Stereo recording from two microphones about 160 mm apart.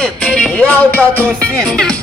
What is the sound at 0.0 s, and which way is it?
Music, 5° left (ahead or behind).